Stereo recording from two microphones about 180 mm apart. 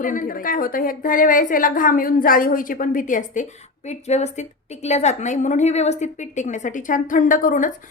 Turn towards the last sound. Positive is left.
turn(degrees=45)  # may be behind; listen again after turning